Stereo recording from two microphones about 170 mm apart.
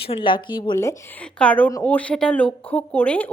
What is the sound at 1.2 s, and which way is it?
A woman's voice, 5° left (ahead or behind).